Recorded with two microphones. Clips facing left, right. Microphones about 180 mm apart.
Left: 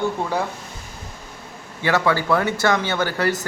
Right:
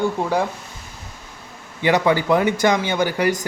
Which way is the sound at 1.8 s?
15° right (ahead or behind).